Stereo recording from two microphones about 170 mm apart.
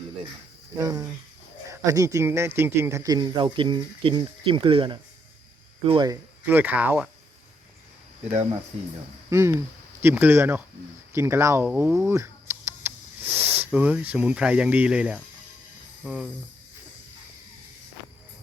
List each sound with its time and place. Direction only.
0.8 s speech: 20° right (ahead or behind)
6.1 s speech: 10° right (ahead or behind)
9.3 s speech: 15° right (ahead or behind); by 16.3 s centre (ahead or behind)